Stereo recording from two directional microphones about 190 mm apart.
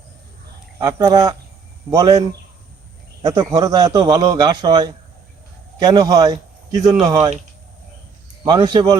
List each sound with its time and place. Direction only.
0.8 s speech: 20° right (ahead or behind)
3.2 s a man's voice: 20° right (ahead or behind)
8.4 s speech: 25° right (ahead or behind)